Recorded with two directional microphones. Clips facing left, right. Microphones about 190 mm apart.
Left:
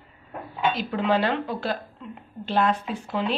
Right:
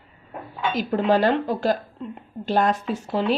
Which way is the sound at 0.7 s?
40° right (ahead or behind).